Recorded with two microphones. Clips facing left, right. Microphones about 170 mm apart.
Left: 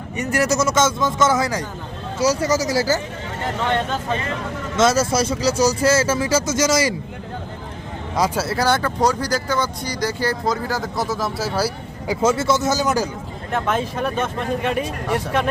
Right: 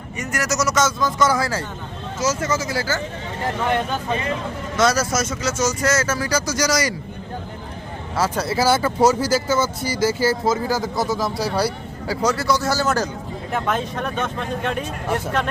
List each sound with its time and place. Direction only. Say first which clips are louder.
0.2 s speech: left 4 dB; 30° left (ahead or behind)
2.1 s speech: left 4 dB; 35° left (ahead or behind)
4.8 s speech: left 2 dB; 25° left (ahead or behind)
8.1 s speech: left 1 dB; 15° left (ahead or behind)
8.4 s speech: right 1 dB; 5° right (ahead or behind)
12.0 s speech: left 2 dB; 20° left (ahead or behind)
13.5 s speech: left 2 dB; 5° left (ahead or behind)